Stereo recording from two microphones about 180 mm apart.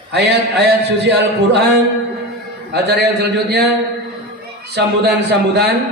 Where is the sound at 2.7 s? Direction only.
65° right (ahead or behind).